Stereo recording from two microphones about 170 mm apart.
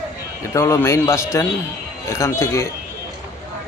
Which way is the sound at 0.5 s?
15° left (ahead or behind).